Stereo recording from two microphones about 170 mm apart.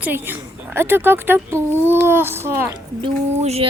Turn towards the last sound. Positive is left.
turn(degrees=-40)  # may be behind; listen again after turning